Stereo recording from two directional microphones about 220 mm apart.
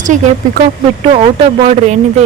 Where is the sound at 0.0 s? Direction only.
35° right (ahead or behind).